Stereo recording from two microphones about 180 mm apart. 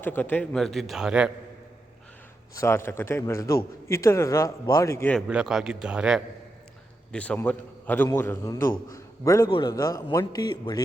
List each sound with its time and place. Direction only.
0.0 s a man's voice: 10° left (ahead or behind)
2.6 s a man's voice: 15° left (ahead or behind)
5.3 s a man's voice: 5° right (ahead or behind)
7.1 s a man's voice: 5° left (ahead or behind)